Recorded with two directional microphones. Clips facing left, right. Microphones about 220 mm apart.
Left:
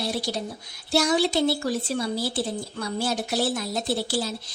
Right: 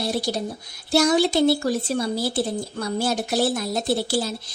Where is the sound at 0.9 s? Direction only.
45° right (ahead or behind).